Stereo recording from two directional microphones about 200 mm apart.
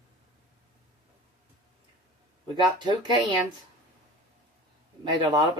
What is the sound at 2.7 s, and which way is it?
Speech, 25° right (ahead or behind).